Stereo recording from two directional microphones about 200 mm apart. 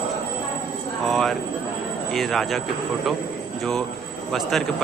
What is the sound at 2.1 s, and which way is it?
Speech, centre (ahead or behind).